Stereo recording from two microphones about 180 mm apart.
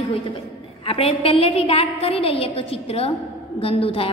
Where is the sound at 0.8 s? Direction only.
30° left (ahead or behind).